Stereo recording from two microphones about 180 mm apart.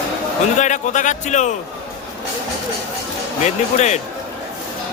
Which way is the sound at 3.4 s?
40° left (ahead or behind).